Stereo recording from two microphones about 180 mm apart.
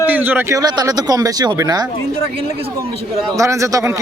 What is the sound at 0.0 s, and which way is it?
Speech, 10° right (ahead or behind).